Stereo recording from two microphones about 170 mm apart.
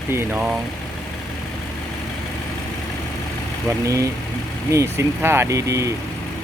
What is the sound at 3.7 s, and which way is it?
Speech, 20° right (ahead or behind).